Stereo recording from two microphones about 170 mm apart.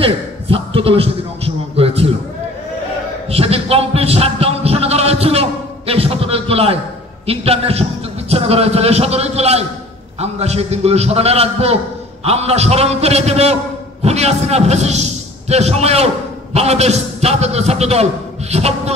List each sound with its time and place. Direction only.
0.0 s a man's voice: 35° right (ahead or behind)
3.3 s a sound: 35° right (ahead or behind)
7.2 s a man's voice: 35° right (ahead or behind)